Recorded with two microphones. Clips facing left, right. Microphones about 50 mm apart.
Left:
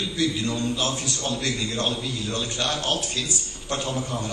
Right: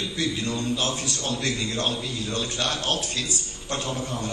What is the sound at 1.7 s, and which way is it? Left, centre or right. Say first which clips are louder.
Speech: left 1 dB; centre.